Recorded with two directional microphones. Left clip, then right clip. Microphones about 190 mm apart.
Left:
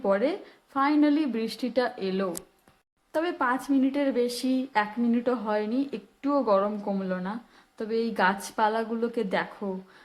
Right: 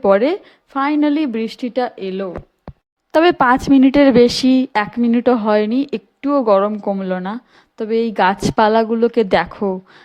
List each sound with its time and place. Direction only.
0.0 s a woman's voice: 35° right (ahead or behind)
3.1 s a woman's voice: 45° right (ahead or behind)